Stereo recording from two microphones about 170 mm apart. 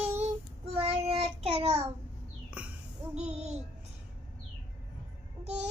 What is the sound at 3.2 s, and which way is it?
Music, 40° right (ahead or behind).